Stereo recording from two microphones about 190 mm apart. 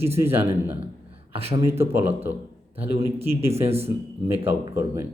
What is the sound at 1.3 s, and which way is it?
Speech, 30° right (ahead or behind).